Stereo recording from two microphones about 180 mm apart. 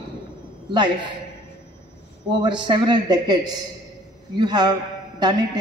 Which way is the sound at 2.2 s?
25° right (ahead or behind).